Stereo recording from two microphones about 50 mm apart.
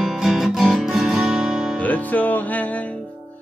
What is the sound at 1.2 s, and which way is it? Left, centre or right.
Music, centre.